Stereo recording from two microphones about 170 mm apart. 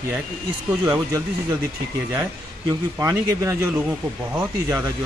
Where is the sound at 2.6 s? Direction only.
15° right (ahead or behind).